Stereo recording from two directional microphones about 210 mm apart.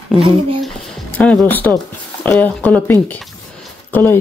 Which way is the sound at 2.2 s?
5° left (ahead or behind).